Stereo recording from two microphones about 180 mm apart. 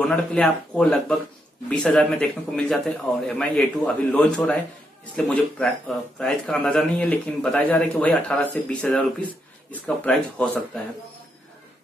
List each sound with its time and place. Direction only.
0.0 s a man's voice: 5° left (ahead or behind)